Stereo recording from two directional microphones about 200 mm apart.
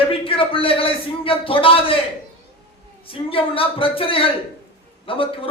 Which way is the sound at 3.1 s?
25° left (ahead or behind).